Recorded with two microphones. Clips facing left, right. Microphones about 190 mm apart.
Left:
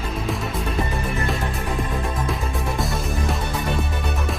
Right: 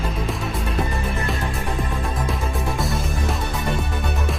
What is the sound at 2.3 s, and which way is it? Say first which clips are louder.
Music: even; centre (ahead or behind).